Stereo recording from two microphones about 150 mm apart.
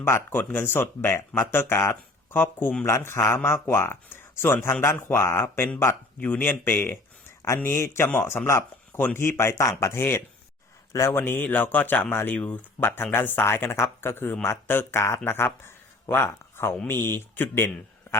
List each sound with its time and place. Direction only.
0.0 s speech: 15° left (ahead or behind)